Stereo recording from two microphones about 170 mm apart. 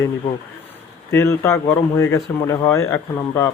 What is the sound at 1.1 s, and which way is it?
A man's voice, 15° left (ahead or behind).